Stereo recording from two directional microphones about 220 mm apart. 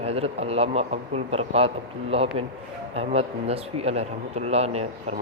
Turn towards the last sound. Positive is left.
turn(degrees=-30)  # may be behind; listen again after turning